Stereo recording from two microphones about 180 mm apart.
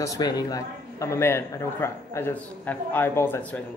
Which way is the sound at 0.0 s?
20° left (ahead or behind).